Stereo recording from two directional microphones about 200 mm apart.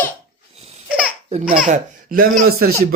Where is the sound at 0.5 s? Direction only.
30° right (ahead or behind).